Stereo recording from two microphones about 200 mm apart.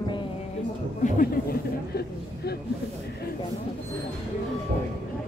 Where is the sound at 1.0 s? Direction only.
40° left (ahead or behind).